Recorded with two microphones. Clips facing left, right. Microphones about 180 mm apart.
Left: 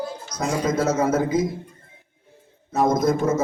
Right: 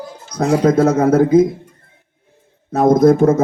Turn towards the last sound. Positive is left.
turn(degrees=-60)  # may be behind; listen again after turning